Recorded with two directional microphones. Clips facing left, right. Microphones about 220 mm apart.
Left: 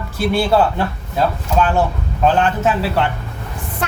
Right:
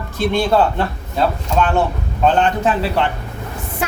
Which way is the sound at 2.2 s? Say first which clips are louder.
Even; 5° left (ahead or behind).